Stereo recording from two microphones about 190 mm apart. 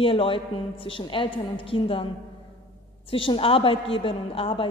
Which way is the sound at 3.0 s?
30° left (ahead or behind).